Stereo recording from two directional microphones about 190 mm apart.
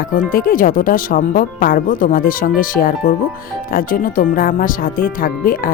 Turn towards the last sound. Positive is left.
turn(degrees=50)  # may be behind; listen again after turning